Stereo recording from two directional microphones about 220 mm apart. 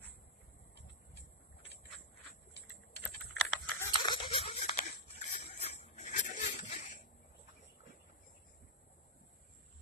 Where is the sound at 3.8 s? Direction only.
20° left (ahead or behind).